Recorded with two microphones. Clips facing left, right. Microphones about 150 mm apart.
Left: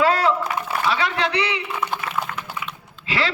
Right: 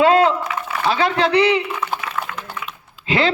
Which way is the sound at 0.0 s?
25° right (ahead or behind).